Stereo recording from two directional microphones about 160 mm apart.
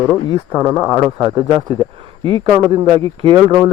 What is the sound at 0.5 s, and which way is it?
Speech, 25° right (ahead or behind).